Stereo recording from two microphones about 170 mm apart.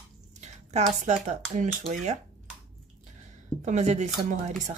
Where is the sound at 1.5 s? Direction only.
45° right (ahead or behind).